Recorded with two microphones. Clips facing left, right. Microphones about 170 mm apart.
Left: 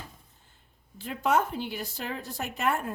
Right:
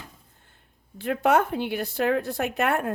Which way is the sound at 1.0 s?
65° right (ahead or behind).